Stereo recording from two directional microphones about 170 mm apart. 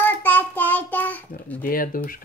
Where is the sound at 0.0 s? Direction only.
10° left (ahead or behind).